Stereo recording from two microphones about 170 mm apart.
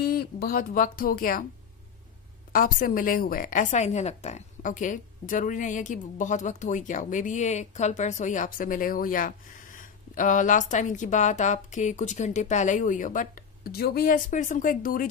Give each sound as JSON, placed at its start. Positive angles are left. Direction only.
{"t": 0.0, "sound": "speech", "side_deg": 65}
{"t": 2.5, "sound": "a woman's voice", "side_deg": 55}